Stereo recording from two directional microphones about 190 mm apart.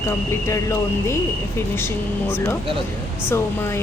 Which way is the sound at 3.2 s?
15° left (ahead or behind).